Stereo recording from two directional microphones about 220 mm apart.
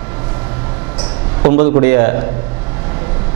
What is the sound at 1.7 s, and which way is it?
Speech, 15° right (ahead or behind).